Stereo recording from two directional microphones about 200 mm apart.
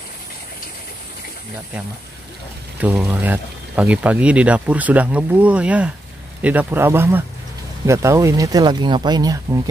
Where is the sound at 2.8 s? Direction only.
10° right (ahead or behind).